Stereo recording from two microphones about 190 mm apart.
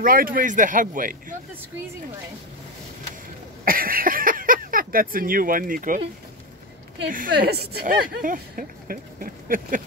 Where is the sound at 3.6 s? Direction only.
50° right (ahead or behind).